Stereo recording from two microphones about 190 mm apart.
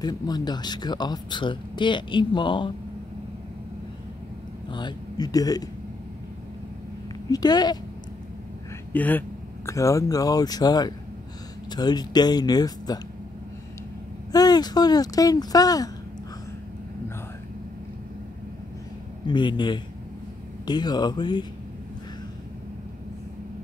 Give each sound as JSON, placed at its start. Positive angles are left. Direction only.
{"t": 0.0, "sound": "speech", "side_deg": 20}
{"t": 4.6, "sound": "a man's voice", "side_deg": 25}
{"t": 7.2, "sound": "speech", "side_deg": 20}
{"t": 8.9, "sound": "speech", "side_deg": 10}
{"t": 14.3, "sound": "speech", "side_deg": 20}
{"t": 19.2, "sound": "speech", "side_deg": 25}